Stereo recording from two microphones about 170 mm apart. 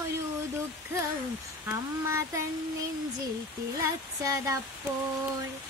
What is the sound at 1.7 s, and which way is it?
Speech, 15° right (ahead or behind).